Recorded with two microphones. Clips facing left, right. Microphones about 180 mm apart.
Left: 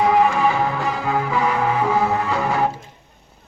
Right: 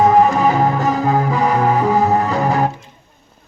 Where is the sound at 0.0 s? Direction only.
45° right (ahead or behind).